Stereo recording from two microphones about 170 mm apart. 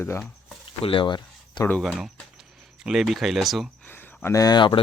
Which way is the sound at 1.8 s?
Centre (ahead or behind).